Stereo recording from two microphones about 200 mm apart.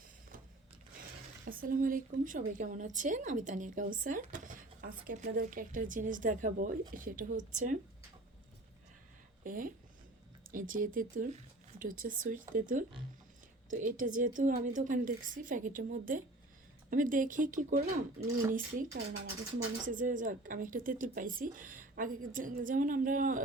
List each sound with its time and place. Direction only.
1.5 s a woman's voice: 45° right (ahead or behind)
9.4 s a woman's voice: 45° right (ahead or behind)